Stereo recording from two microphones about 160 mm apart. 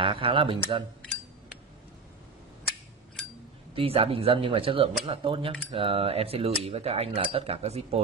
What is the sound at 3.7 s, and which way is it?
Speech, 35° right (ahead or behind).